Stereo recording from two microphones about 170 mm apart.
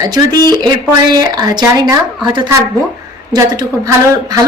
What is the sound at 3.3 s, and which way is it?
Speech, 25° right (ahead or behind).